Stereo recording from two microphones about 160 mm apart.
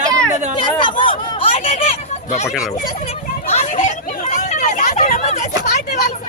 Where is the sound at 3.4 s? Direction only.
45° left (ahead or behind).